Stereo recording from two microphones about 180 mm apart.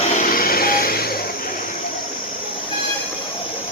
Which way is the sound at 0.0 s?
40° left (ahead or behind).